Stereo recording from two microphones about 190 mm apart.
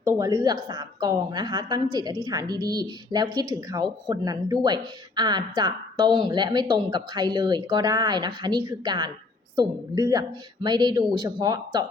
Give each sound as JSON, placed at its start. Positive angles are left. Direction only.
{"t": 0.0, "sound": "speech", "side_deg": -15}